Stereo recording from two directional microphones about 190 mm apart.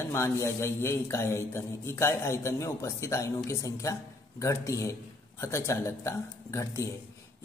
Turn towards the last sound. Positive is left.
turn(degrees=15)  # may be behind; listen again after turning